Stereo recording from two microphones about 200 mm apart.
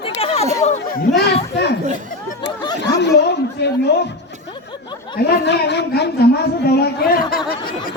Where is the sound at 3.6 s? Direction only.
55° left (ahead or behind).